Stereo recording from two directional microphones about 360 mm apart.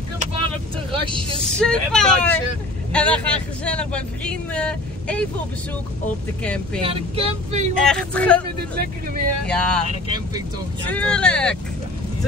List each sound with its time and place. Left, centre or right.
0.9 s speech: centre
1.4 s speech: centre
6.4 s speech: centre
6.8 s speech: centre
7.7 s speech: centre
8.7 s speech: right
9.5 s speech: centre
10.9 s speech: centre